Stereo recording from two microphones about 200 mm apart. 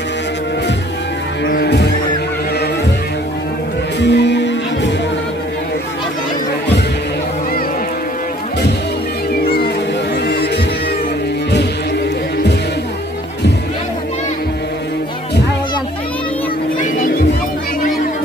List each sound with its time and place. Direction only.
1.5 s music: 55° left (ahead or behind)
4.0 s music: 60° left (ahead or behind)
9.3 s music: 50° left (ahead or behind)